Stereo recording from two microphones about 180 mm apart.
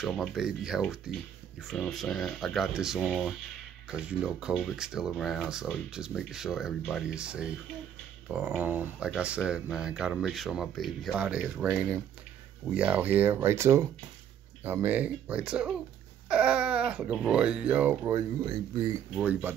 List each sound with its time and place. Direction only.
0.0 s speech: centre (ahead or behind)
18.5 s speech: 25° right (ahead or behind)
19.1 s speech: 10° right (ahead or behind)